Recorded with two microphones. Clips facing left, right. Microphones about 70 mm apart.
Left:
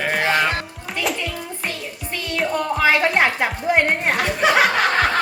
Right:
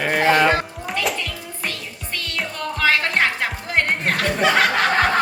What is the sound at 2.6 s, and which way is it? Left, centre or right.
Music, centre.